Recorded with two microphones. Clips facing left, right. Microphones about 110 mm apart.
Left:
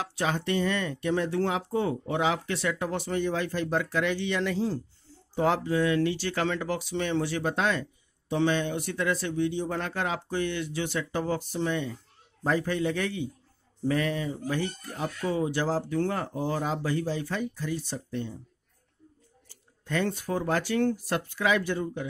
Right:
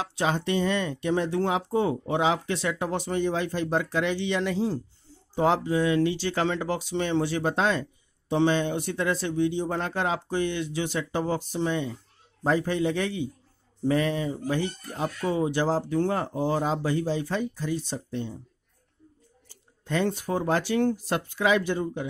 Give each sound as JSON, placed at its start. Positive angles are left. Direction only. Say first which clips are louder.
{"t": 0.0, "sound": "speech", "louder": "right 2 dB", "side_deg": -25}
{"t": 19.5, "sound": "speech", "louder": "right 2 dB", "side_deg": -20}